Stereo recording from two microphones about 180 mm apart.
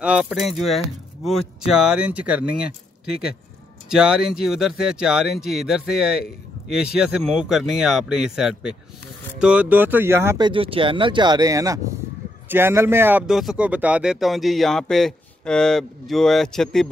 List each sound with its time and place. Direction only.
0.0 s speech: 5° right (ahead or behind)
3.9 s speech: 5° right (ahead or behind)
10.4 s speech: 30° right (ahead or behind); by 16.9 s 5° left (ahead or behind)